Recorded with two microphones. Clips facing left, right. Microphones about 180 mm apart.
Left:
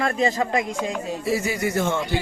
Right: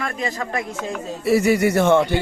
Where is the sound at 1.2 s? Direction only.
65° right (ahead or behind).